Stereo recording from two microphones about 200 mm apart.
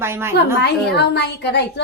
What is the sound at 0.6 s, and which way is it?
A woman's voice, 55° left (ahead or behind).